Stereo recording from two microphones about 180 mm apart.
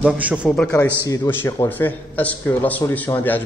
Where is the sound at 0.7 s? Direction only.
20° left (ahead or behind).